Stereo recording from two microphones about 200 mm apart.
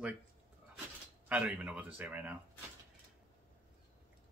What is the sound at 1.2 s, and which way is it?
Speech, 5° right (ahead or behind).